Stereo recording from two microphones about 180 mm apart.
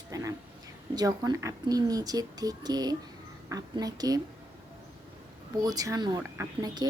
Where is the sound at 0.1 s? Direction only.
20° right (ahead or behind).